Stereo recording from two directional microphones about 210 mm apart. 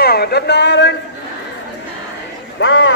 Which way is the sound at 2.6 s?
65° left (ahead or behind).